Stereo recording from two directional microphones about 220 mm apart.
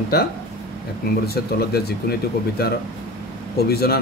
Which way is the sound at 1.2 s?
45° left (ahead or behind).